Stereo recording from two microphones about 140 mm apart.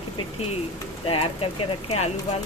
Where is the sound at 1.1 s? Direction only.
45° left (ahead or behind).